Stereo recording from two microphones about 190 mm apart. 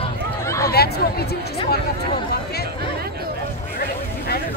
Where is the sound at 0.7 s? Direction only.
55° left (ahead or behind).